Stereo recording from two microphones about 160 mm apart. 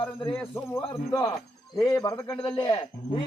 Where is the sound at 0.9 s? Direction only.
20° left (ahead or behind).